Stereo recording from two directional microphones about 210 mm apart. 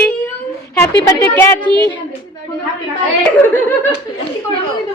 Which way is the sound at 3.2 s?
10° left (ahead or behind).